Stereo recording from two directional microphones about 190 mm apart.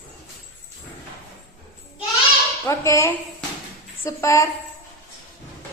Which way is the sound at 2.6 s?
15° left (ahead or behind).